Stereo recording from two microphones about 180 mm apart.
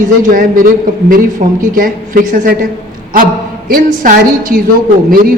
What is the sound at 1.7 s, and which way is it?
Speech, 50° right (ahead or behind).